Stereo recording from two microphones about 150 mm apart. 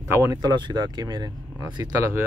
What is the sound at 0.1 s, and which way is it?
Speech, 20° right (ahead or behind).